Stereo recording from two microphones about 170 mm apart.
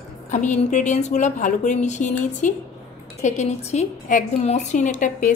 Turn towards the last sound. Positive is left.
turn(degrees=50)  # may be behind; listen again after turning